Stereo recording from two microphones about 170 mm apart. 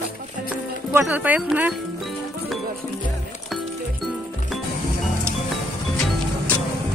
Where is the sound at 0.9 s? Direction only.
10° right (ahead or behind).